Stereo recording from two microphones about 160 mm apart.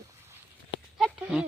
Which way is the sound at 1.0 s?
5° right (ahead or behind).